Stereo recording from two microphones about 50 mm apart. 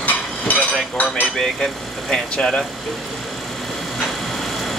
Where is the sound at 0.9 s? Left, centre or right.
Left.